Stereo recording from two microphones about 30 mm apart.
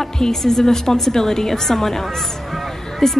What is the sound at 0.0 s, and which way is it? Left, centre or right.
A woman's voice, centre.